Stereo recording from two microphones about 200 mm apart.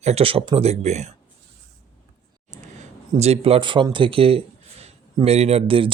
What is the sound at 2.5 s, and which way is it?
Speech, 35° right (ahead or behind).